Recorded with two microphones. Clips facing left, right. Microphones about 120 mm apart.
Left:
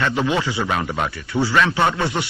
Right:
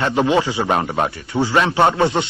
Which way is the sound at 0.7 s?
40° right (ahead or behind).